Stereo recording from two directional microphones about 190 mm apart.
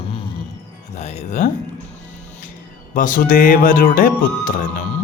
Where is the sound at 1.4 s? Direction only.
40° left (ahead or behind).